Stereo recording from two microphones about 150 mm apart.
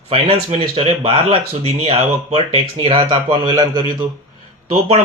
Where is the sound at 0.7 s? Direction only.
40° right (ahead or behind).